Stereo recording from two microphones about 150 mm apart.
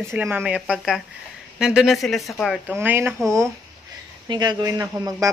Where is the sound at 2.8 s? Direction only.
10° right (ahead or behind).